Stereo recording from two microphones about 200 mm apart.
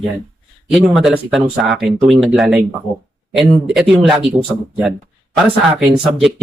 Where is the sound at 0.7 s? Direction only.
Centre (ahead or behind).